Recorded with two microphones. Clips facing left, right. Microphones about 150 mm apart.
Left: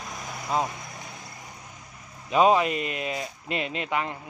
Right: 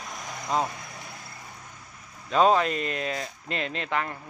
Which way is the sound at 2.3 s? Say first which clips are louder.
Left 1 dB; 10° left (ahead or behind).